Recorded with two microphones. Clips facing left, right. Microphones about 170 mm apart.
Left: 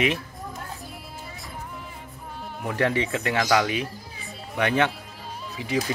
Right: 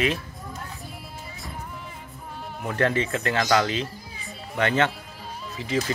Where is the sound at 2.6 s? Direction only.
10° left (ahead or behind).